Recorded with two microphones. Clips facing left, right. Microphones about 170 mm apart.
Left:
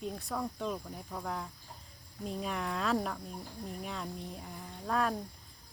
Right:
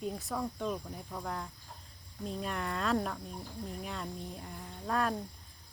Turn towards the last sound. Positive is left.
turn(degrees=0)  # may be behind; listen again after turning